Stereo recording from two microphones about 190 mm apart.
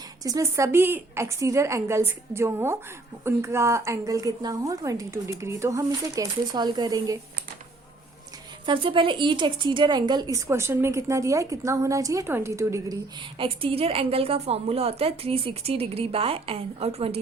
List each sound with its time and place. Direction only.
0.2 s speech: 20° right (ahead or behind)
8.6 s speech: 25° right (ahead or behind)
13.4 s a woman's voice: 30° right (ahead or behind)